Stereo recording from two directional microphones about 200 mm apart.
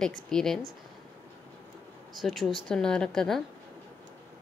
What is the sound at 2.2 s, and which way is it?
Speech, centre (ahead or behind).